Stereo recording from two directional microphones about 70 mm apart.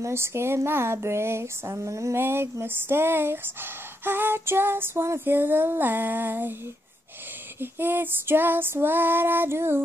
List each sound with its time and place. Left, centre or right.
0.0 s speech: right
7.6 s speech: right